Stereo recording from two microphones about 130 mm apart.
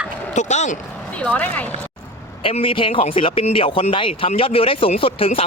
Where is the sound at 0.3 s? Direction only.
65° left (ahead or behind).